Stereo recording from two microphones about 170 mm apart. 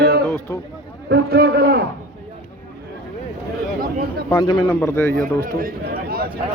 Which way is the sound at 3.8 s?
60° right (ahead or behind).